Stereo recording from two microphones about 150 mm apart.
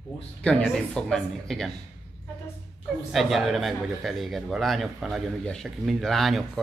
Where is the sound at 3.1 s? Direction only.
Centre (ahead or behind).